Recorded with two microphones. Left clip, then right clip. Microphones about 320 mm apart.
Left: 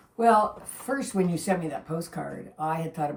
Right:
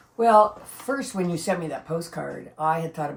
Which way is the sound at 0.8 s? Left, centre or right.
Centre.